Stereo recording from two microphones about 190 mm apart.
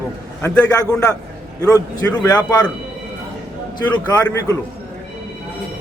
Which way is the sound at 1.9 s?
20° left (ahead or behind).